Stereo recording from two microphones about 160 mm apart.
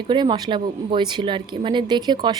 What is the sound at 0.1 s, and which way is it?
A woman's voice, 30° right (ahead or behind).